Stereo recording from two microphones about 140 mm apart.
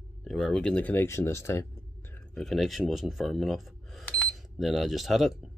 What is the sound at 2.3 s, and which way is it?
Speech, centre (ahead or behind).